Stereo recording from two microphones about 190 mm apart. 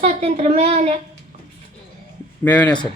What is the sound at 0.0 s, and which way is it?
Speech, 35° right (ahead or behind).